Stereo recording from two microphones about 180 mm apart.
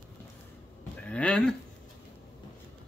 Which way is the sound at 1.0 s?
5° left (ahead or behind).